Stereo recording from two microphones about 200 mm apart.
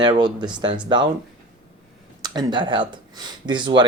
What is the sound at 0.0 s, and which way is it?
Speech, 20° right (ahead or behind).